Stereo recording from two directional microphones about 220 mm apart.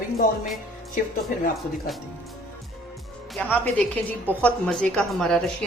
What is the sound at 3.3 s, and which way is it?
A woman's voice, 5° left (ahead or behind).